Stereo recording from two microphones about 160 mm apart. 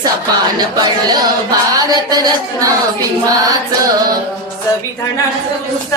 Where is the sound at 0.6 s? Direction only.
25° right (ahead or behind).